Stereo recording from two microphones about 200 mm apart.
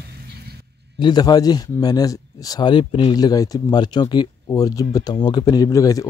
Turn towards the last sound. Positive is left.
turn(degrees=15)  # may be behind; listen again after turning